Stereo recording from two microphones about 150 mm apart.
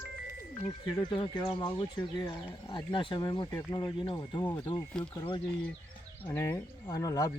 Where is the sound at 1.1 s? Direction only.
30° left (ahead or behind).